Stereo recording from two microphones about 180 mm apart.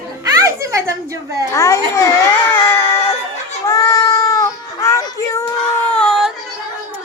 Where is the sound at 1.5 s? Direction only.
15° left (ahead or behind).